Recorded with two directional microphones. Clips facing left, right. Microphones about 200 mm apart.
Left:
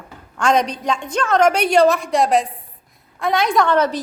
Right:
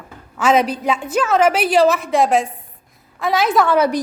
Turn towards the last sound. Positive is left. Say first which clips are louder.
# right 1 dB
turn(degrees=-10)  # may be behind; listen again after turning